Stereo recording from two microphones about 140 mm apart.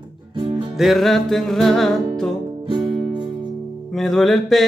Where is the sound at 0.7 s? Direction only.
Centre (ahead or behind).